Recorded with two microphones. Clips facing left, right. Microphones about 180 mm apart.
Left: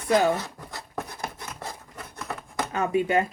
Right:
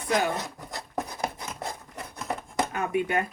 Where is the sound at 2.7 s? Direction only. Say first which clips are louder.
Left 6 dB; 25° left (ahead or behind).